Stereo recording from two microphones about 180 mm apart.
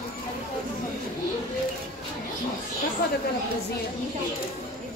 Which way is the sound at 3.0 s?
65° left (ahead or behind).